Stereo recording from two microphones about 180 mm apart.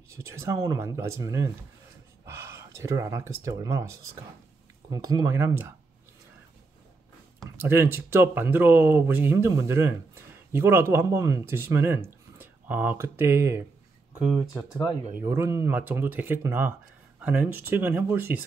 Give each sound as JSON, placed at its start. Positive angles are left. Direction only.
{"t": 0.2, "sound": "speech", "side_deg": -15}
{"t": 7.6, "sound": "speech", "side_deg": -15}
{"t": 14.7, "sound": "speech", "side_deg": 0}
{"t": 15.1, "sound": "speech", "side_deg": -15}